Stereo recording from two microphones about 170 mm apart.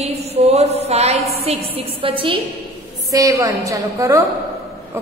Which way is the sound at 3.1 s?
20° right (ahead or behind).